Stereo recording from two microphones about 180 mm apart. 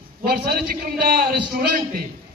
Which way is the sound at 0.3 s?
55° right (ahead or behind).